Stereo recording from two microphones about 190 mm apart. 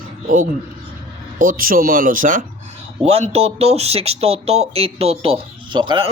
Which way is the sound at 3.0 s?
35° right (ahead or behind).